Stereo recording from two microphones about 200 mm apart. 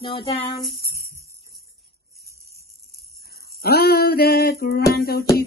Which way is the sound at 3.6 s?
50° left (ahead or behind).